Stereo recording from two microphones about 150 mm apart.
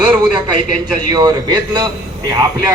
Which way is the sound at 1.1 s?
25° right (ahead or behind).